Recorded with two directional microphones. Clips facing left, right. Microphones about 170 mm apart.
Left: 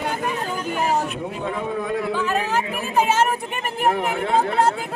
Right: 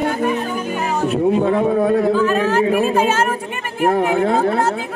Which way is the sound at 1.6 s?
50° right (ahead or behind).